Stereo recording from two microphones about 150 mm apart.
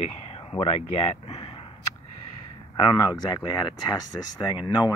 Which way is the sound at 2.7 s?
30° left (ahead or behind).